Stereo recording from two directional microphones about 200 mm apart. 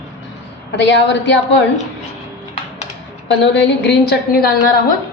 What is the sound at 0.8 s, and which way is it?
Speech, 60° left (ahead or behind).